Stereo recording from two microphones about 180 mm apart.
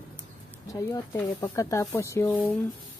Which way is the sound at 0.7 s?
20° left (ahead or behind).